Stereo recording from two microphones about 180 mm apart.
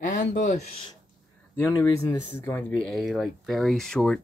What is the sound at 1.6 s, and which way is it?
Speech, 15° left (ahead or behind).